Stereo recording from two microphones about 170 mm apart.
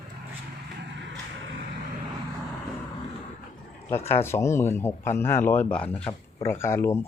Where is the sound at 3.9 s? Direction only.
15° left (ahead or behind).